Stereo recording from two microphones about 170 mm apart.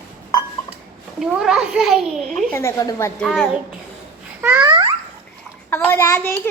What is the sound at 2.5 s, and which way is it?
Speech, 20° left (ahead or behind).